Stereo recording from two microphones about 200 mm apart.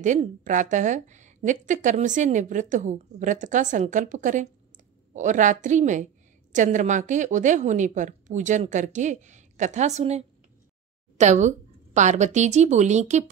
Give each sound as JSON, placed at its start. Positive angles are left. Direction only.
{"t": 0.0, "sound": "a woman's voice", "side_deg": -40}